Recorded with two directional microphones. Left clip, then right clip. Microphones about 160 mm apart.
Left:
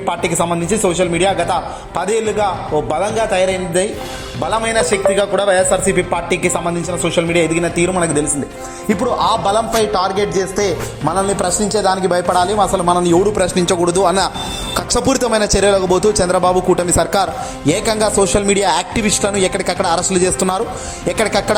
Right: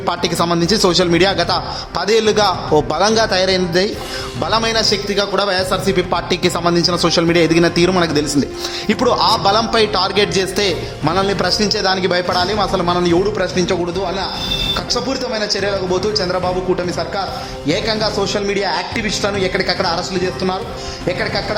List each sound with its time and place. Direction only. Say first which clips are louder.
0.0 s a man's voice: even; 30° right (ahead or behind)
4.7 s a man's voice: left 3 dB; 5° right (ahead or behind)
6.1 s a man's voice: even; 25° right (ahead or behind)
9.0 s a man's voice: right 1 dB; 20° right (ahead or behind)
11.6 s a man's voice: left 1 dB; 5° left (ahead or behind); by 13.7 s 20° left (ahead or behind)
13.7 s a man's voice: left 5 dB; 40° left (ahead or behind)